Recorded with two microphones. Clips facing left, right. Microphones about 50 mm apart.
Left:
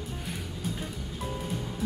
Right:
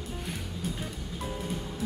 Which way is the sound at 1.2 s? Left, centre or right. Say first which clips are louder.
Even; centre.